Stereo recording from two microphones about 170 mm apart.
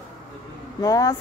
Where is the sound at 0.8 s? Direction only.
20° left (ahead or behind).